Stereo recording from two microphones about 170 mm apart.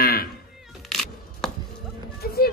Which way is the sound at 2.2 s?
60° left (ahead or behind).